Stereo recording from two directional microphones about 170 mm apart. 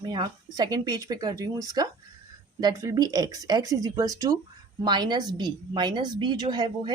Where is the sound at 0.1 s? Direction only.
25° right (ahead or behind).